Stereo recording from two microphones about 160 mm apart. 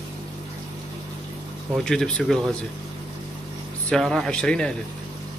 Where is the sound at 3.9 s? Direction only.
Centre (ahead or behind).